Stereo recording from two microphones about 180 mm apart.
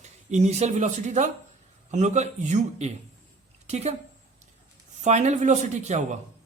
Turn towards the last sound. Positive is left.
turn(degrees=-40)  # may be behind; listen again after turning